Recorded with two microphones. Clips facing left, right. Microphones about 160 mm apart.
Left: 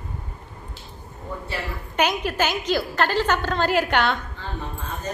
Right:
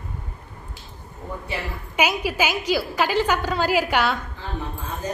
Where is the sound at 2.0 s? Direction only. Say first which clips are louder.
Even; 10° right (ahead or behind).